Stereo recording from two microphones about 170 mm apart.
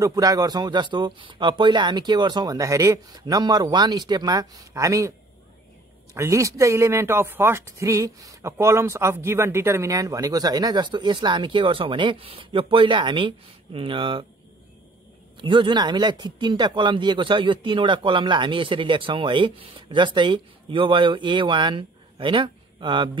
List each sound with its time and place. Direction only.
0.0 s speech: 20° right (ahead or behind)
6.1 s speech: 15° right (ahead or behind)
15.3 s speech: 30° right (ahead or behind)